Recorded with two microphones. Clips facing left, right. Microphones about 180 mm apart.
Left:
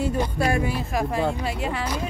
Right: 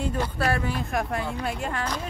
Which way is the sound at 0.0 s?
15° left (ahead or behind).